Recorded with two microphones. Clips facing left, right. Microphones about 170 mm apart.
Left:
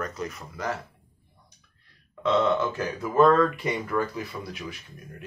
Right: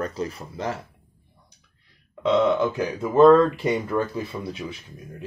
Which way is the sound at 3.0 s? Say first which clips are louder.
Right 5 dB; 25° right (ahead or behind).